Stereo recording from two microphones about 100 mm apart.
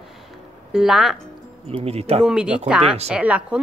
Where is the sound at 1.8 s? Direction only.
90° right.